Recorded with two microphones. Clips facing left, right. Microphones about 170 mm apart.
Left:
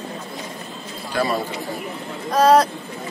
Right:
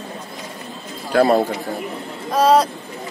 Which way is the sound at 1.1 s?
60° right (ahead or behind).